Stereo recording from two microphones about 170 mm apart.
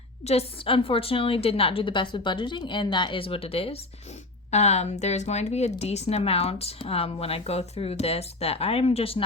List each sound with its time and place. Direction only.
0.3 s speech: 35° left (ahead or behind)